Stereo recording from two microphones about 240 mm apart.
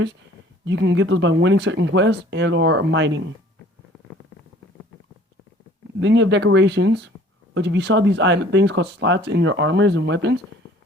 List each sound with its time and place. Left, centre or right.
0.6 s speech: right
6.0 s speech: right